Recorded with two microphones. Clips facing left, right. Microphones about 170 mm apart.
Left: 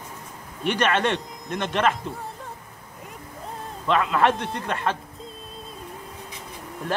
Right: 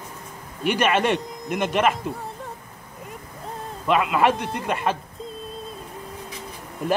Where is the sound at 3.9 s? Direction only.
10° right (ahead or behind).